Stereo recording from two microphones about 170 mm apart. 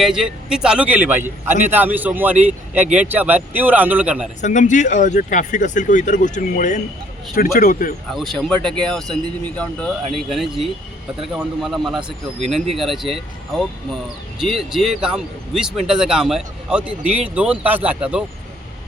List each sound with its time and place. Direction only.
0.0 s speech: 5° right (ahead or behind)
4.4 s speech: 45° left (ahead or behind)
7.3 s speech: 60° left (ahead or behind)
8.1 s speech: centre (ahead or behind)